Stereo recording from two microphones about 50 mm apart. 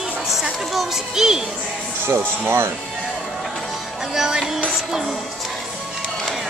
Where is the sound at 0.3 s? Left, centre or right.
Centre.